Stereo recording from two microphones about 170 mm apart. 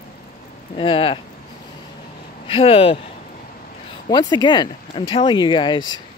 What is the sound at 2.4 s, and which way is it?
Speech, 35° left (ahead or behind).